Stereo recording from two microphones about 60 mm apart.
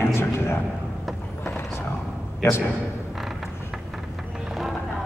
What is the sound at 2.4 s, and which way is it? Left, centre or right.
Speech, left.